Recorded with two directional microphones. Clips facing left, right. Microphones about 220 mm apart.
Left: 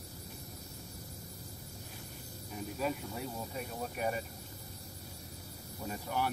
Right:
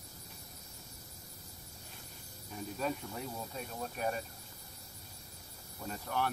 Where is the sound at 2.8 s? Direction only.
5° left (ahead or behind).